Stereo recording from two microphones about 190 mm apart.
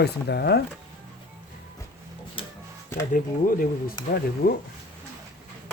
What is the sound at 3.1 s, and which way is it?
Speech, 50° left (ahead or behind).